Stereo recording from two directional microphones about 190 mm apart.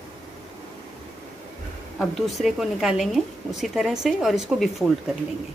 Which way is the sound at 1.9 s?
Centre (ahead or behind).